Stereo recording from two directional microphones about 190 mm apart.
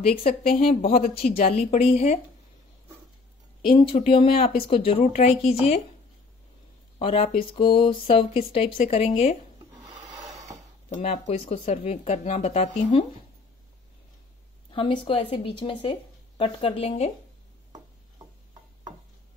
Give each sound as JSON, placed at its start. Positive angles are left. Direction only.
{"t": 0.1, "sound": "speech", "side_deg": 50}
{"t": 0.6, "sound": "speech", "side_deg": 30}
{"t": 0.9, "sound": "speech", "side_deg": 50}
{"t": 1.4, "sound": "speech", "side_deg": 35}
{"t": 3.6, "sound": "speech", "side_deg": 25}
{"t": 7.0, "sound": "speech", "side_deg": 30}
{"t": 10.9, "sound": "speech", "side_deg": 35}
{"t": 14.7, "sound": "speech", "side_deg": 30}